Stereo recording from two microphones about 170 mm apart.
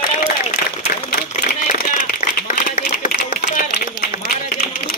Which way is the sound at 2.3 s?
55° left (ahead or behind).